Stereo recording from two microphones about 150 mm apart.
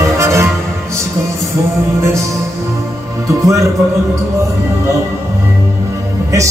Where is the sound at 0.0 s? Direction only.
20° right (ahead or behind).